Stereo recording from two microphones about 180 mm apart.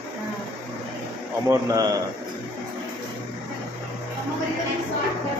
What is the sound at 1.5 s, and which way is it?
Speech, 20° right (ahead or behind).